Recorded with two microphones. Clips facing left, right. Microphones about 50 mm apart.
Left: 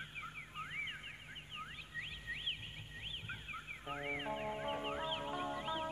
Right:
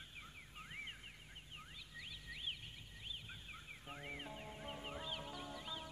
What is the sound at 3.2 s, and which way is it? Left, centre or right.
Fowl, left.